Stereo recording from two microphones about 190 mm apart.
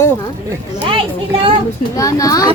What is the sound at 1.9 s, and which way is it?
Speech, 20° left (ahead or behind).